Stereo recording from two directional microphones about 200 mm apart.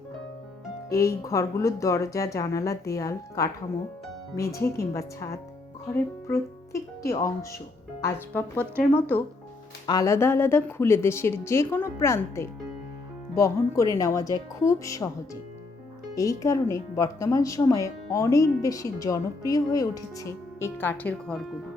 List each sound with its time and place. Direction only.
0.9 s speech: 15° left (ahead or behind)
16.1 s speech: 15° left (ahead or behind)